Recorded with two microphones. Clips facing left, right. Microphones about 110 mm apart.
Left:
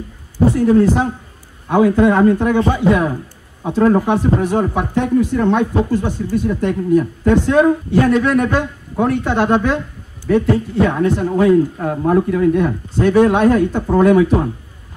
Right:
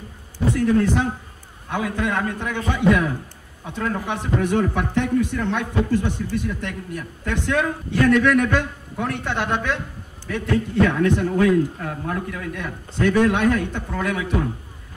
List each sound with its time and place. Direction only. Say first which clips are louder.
0.4 s speech: left 7 dB; 30° left (ahead or behind)